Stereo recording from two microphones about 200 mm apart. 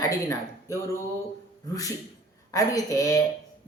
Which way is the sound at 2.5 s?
15° left (ahead or behind).